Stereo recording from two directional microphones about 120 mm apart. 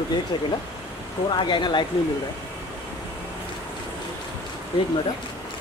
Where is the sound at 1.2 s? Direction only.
40° left (ahead or behind).